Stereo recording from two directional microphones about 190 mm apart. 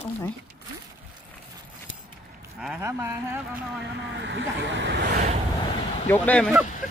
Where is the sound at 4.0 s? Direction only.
65° right (ahead or behind).